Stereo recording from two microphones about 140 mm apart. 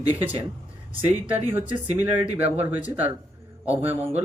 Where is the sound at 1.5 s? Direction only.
15° right (ahead or behind).